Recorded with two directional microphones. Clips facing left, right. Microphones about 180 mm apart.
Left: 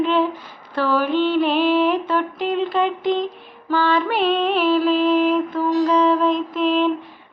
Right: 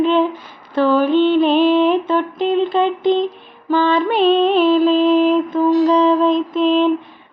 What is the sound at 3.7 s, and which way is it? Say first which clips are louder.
Music: right 4 dB; 20° right (ahead or behind).